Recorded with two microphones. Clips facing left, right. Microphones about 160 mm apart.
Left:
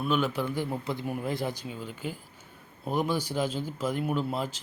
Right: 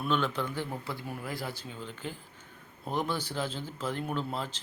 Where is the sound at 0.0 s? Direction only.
10° left (ahead or behind).